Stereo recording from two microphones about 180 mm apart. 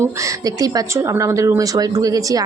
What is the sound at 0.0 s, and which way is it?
Speech, 15° right (ahead or behind).